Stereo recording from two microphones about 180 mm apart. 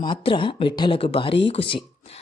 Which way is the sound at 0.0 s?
30° left (ahead or behind).